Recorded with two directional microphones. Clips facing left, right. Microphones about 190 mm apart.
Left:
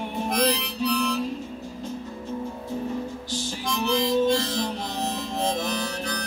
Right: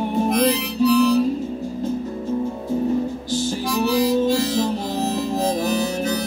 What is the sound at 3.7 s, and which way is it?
Harmonica, 5° right (ahead or behind).